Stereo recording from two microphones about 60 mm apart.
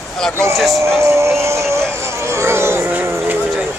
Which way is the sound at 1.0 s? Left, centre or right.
Right.